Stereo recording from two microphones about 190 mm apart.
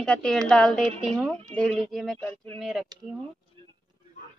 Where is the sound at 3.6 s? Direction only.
25° right (ahead or behind).